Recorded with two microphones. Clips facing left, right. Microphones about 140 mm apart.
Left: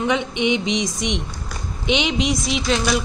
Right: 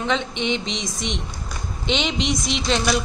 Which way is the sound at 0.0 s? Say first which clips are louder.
Left 3 dB; 10° left (ahead or behind).